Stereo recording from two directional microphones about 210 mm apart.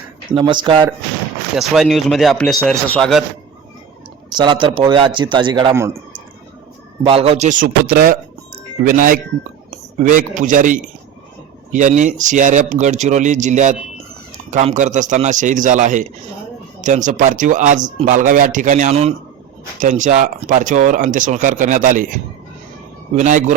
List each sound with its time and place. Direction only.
0.3 s a man's voice: 25° right (ahead or behind)
1.5 s speech: centre (ahead or behind)
4.4 s a man's voice: 20° right (ahead or behind)
7.0 s a man's voice: 30° right (ahead or behind)